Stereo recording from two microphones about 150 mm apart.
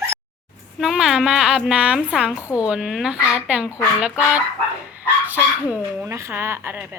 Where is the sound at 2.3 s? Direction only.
20° left (ahead or behind).